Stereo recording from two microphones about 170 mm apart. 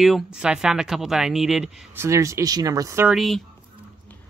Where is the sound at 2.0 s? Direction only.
15° right (ahead or behind).